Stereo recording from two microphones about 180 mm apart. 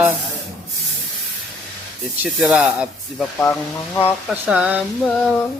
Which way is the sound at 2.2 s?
5° right (ahead or behind).